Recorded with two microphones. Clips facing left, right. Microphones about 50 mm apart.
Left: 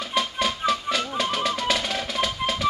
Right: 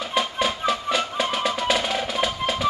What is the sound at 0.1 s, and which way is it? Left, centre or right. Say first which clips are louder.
Music: right 1 dB; centre.